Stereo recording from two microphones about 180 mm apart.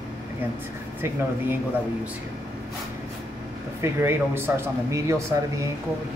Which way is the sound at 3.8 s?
15° right (ahead or behind).